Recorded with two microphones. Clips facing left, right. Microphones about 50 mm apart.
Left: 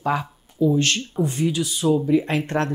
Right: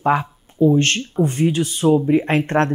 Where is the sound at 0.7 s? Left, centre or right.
Right.